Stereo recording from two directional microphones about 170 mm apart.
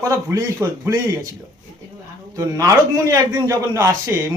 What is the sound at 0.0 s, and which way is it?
Speech, 20° right (ahead or behind).